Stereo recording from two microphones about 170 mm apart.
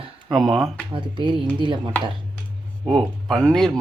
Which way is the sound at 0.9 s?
30° right (ahead or behind).